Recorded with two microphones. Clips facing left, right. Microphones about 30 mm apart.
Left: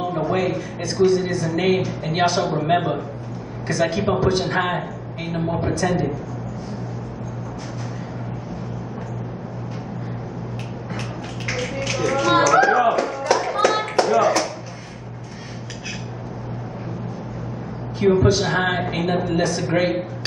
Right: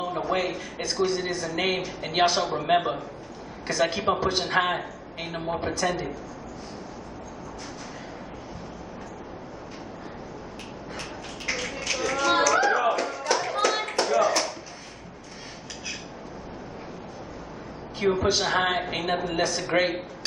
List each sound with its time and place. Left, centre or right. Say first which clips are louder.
0.0 s a sound: left 5 dB; centre
0.4 s a man's voice: left 6 dB; centre
11.4 s music: left 4 dB; centre
12.2 s music: left 5 dB; centre
12.4 s music: left 6 dB; centre
13.2 s clapping: left 6 dB; centre
18.0 s a sound: left 7 dB; centre
18.3 s a man's voice: left 4 dB; centre